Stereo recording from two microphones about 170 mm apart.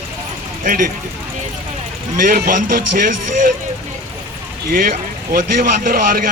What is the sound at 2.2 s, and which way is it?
Speech, 55° right (ahead or behind).